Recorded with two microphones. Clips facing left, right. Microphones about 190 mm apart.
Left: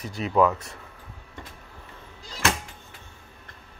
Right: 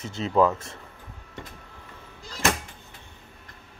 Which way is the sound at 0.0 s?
25° right (ahead or behind).